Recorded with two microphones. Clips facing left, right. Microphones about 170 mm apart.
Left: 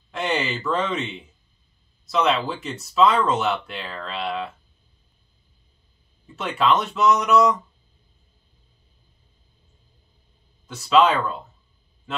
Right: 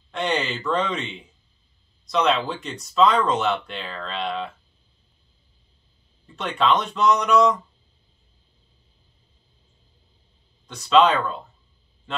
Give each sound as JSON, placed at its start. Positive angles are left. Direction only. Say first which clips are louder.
{"t": 0.1, "sound": "speech", "louder": "even", "side_deg": 5}
{"t": 6.3, "sound": "speech", "louder": "even", "side_deg": 5}
{"t": 10.7, "sound": "speech", "louder": "even", "side_deg": 5}